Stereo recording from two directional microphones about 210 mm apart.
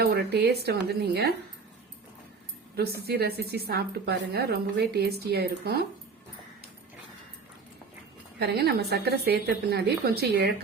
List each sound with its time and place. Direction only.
0.0 s a woman's voice: 50° right (ahead or behind)
2.7 s a woman's voice: 50° right (ahead or behind)
8.4 s a woman's voice: 50° right (ahead or behind)